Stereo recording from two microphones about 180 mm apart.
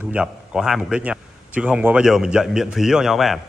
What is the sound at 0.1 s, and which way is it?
Speech, 5° right (ahead or behind).